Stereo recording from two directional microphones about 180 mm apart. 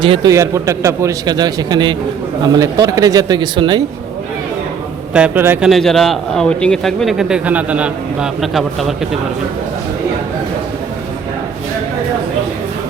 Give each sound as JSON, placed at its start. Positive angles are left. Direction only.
{"t": 0.0, "sound": "a man's voice", "side_deg": -25}
{"t": 5.1, "sound": "a man's voice", "side_deg": -10}